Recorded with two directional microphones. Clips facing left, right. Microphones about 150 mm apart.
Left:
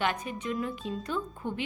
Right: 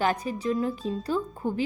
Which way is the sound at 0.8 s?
Centre (ahead or behind).